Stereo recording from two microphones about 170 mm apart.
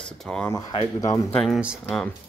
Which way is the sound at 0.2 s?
5° left (ahead or behind).